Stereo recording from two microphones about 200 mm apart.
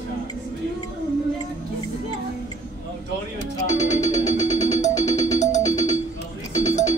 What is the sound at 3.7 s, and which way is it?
Music, 35° left (ahead or behind).